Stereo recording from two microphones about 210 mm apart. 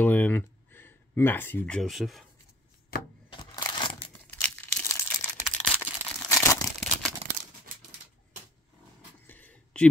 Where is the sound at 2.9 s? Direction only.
45° left (ahead or behind).